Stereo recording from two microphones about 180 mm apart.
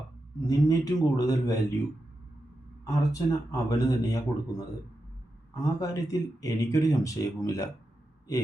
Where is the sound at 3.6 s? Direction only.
20° left (ahead or behind).